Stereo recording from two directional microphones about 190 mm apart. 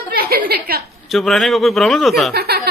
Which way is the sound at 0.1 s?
55° right (ahead or behind).